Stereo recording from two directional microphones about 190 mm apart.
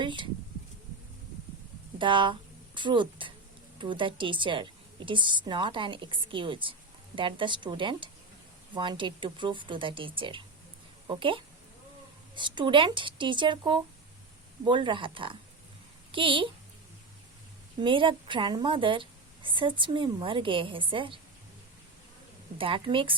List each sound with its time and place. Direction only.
0.0 s a sound: 25° right (ahead or behind)
2.0 s a woman's voice: 25° right (ahead or behind)
17.7 s a woman's voice: 25° right (ahead or behind)
22.5 s a woman's voice: 30° right (ahead or behind)